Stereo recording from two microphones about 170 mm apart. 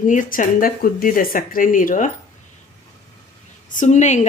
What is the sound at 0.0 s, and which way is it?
Speech, 50° left (ahead or behind).